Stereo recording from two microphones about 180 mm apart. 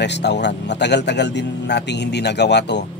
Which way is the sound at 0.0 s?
70° left (ahead or behind).